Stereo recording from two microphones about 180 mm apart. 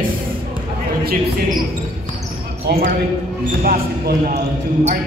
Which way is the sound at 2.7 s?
70° right (ahead or behind).